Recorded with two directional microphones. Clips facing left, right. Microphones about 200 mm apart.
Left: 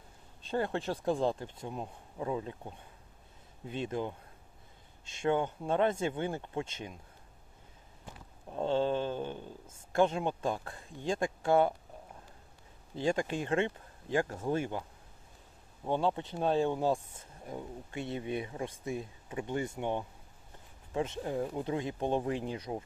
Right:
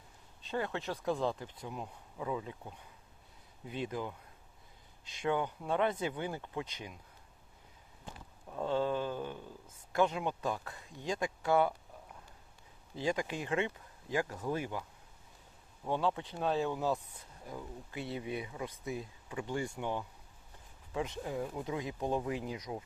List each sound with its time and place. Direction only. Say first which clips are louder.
0.5 s speech: left 4 dB; 30° left (ahead or behind)
3.7 s speech: left 3 dB; 25° left (ahead or behind)
8.4 s speech: left 3 dB; 25° left (ahead or behind)
13.0 s speech: left 3 dB; 30° left (ahead or behind)